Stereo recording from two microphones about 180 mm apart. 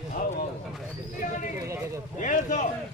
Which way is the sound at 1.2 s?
45° left (ahead or behind).